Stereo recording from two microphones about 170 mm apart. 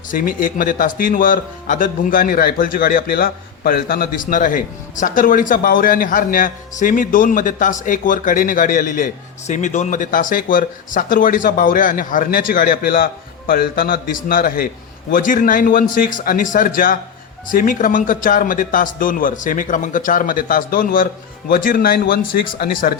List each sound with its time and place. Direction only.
0.1 s a man's voice: 55° left (ahead or behind)